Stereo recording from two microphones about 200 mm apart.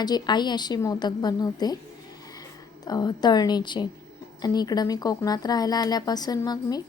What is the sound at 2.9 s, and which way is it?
A woman's voice, 20° left (ahead or behind).